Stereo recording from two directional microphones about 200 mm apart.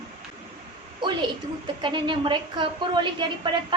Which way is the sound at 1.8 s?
25° right (ahead or behind).